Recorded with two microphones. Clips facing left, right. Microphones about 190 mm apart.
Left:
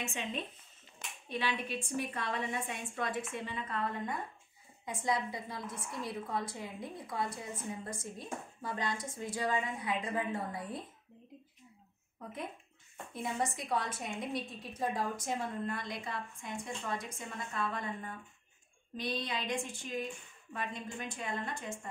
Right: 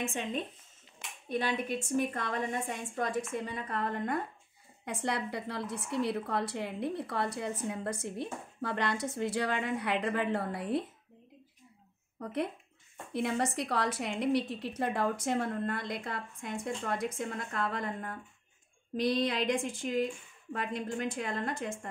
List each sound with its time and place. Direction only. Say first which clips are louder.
0.0 s a woman's voice: right 4 dB; 50° right (ahead or behind)
2.0 s a woman's voice: right 5 dB; 45° right (ahead or behind)
3.7 s a woman's voice: right 5 dB; 65° right (ahead or behind)
12.2 s a woman's voice: right 8 dB; 75° right (ahead or behind)
18.9 s a woman's voice: right 8 dB; 90° right